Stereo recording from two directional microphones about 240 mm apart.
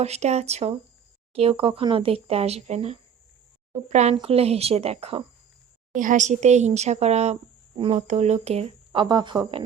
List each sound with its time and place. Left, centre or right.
0.0 s speech: right